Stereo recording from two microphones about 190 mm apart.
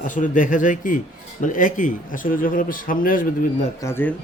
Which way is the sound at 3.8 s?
15° left (ahead or behind).